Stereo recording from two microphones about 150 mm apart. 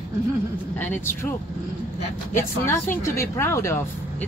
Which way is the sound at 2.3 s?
15° left (ahead or behind).